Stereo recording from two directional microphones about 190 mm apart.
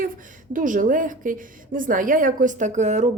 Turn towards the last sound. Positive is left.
turn(degrees=-40)  # may be behind; listen again after turning